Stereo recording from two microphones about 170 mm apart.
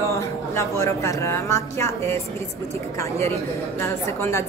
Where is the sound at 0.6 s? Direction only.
15° left (ahead or behind).